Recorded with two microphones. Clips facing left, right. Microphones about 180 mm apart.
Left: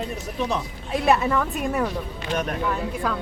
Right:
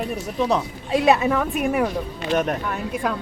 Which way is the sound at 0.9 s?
20° right (ahead or behind).